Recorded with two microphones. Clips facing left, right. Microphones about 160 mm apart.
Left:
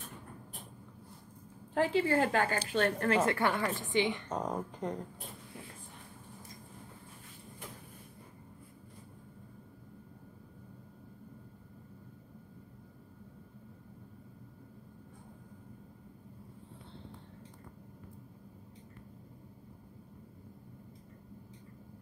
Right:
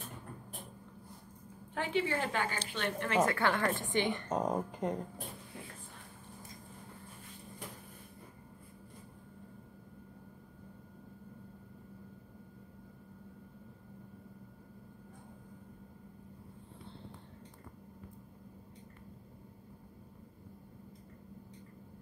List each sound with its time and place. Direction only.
2.0 s a woman's voice: 40° left (ahead or behind)
3.3 s a woman's voice: 15° left (ahead or behind)
3.7 s a woman's voice: centre (ahead or behind)